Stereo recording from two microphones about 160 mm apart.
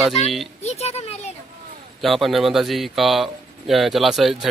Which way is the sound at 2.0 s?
Centre (ahead or behind).